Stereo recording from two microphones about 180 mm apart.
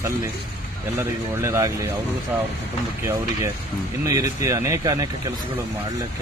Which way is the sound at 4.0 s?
20° right (ahead or behind).